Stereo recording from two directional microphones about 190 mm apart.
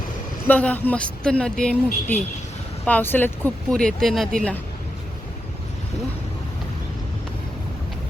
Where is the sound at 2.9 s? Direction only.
10° left (ahead or behind).